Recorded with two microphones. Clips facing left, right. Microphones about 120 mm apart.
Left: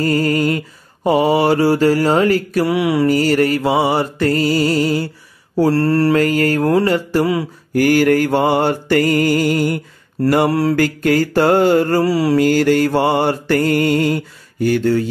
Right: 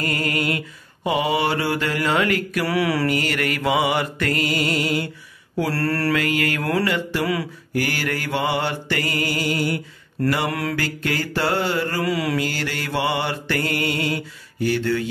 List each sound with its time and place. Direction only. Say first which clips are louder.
0.0 s music: left 8 dB; 35° left (ahead or behind)
2.6 s mantra: left 5 dB; 20° left (ahead or behind)
3.1 s music: left 9 dB; 35° left (ahead or behind)
5.7 s mantra: left 8 dB; 25° left (ahead or behind)
6.1 s music: left 8 dB; 40° left (ahead or behind)
7.7 s mantra: left 12 dB; 45° left (ahead or behind)
10.5 s music: left 10 dB; 30° left (ahead or behind)
10.8 s mantra: left 10 dB; 45° left (ahead or behind)
12.4 s mantra: left 13 dB; 45° left (ahead or behind)